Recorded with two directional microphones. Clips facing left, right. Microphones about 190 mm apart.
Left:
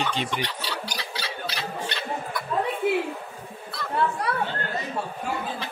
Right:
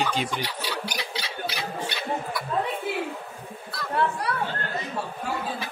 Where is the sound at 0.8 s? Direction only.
15° right (ahead or behind).